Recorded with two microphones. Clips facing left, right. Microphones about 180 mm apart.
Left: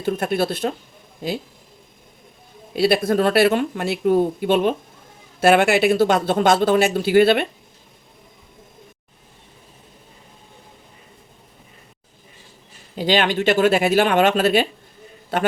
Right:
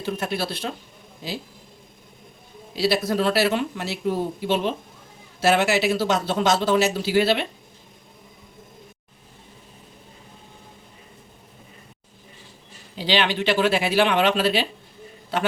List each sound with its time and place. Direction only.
0.0 s speech: 50° left (ahead or behind)
2.7 s speech: 55° left (ahead or behind)
13.0 s speech: 50° left (ahead or behind)